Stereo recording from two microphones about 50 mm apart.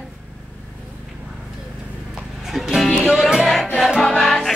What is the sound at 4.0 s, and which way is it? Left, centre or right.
Music, centre.